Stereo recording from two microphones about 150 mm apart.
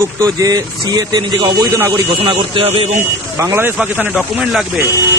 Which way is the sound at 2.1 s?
35° right (ahead or behind).